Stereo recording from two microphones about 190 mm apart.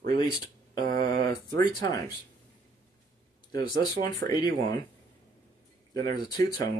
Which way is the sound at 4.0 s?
20° left (ahead or behind).